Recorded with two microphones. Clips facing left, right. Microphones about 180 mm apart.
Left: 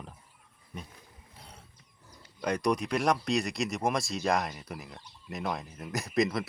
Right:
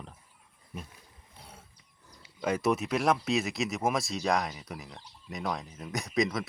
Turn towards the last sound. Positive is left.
turn(degrees=0)  # may be behind; listen again after turning